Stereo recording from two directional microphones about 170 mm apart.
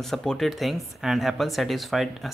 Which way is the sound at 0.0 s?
Centre (ahead or behind).